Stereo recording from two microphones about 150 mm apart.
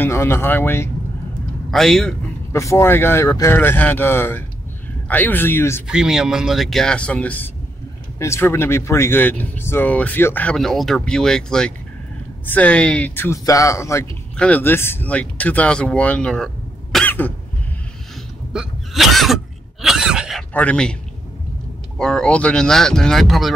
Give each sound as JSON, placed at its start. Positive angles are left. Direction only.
{"t": 0.0, "sound": "speech", "side_deg": 15}
{"t": 1.7, "sound": "speech", "side_deg": 5}
{"t": 2.5, "sound": "speech", "side_deg": 20}
{"t": 5.9, "sound": "speech", "side_deg": -5}
{"t": 14.3, "sound": "speech", "side_deg": 10}
{"t": 18.5, "sound": "cough", "side_deg": -5}
{"t": 20.5, "sound": "speech", "side_deg": 5}
{"t": 21.9, "sound": "speech", "side_deg": 5}